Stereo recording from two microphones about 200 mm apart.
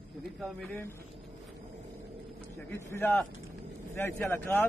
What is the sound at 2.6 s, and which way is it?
Speech, 15° left (ahead or behind).